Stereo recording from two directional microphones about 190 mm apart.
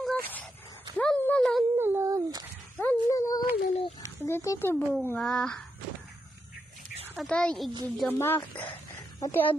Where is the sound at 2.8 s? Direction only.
15° left (ahead or behind).